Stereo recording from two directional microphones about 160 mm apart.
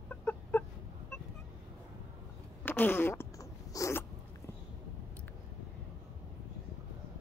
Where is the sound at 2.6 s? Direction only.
10° left (ahead or behind).